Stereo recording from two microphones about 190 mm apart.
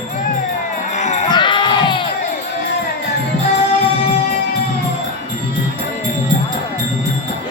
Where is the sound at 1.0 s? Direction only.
40° left (ahead or behind).